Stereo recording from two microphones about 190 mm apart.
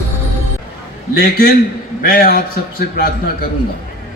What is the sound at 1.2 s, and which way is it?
A man's voice, 50° left (ahead or behind).